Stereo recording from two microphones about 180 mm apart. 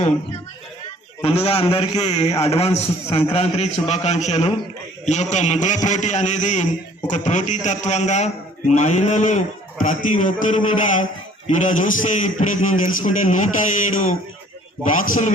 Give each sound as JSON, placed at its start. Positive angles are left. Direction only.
{"t": 1.2, "sound": "a man's voice", "side_deg": 35}